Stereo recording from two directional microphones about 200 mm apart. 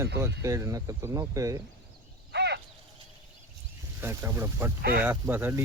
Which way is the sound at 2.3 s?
55° right (ahead or behind).